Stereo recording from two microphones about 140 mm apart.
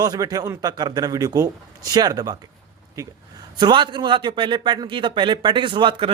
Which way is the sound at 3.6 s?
30° right (ahead or behind).